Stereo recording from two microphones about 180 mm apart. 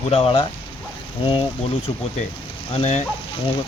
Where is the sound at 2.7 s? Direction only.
35° left (ahead or behind).